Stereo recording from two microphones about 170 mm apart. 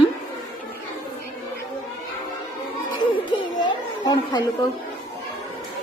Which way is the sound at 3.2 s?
25° left (ahead or behind).